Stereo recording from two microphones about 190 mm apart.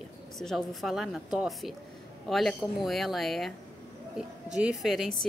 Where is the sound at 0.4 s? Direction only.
Centre (ahead or behind).